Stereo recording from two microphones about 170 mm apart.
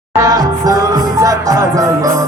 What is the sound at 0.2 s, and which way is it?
Music, 20° right (ahead or behind).